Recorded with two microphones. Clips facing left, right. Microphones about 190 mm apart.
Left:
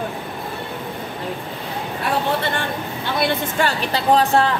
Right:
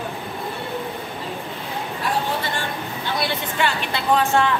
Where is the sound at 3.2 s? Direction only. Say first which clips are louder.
Left 4 dB; 40° left (ahead or behind).